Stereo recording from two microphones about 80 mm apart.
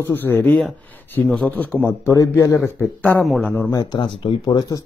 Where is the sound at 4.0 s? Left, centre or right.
Left.